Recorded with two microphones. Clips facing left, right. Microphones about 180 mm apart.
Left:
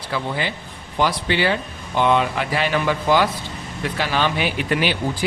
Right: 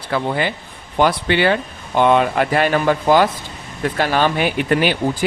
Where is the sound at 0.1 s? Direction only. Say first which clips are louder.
Right 5 dB; 55° right (ahead or behind).